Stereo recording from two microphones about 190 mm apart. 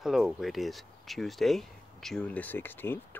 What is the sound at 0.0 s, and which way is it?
Speech, centre (ahead or behind).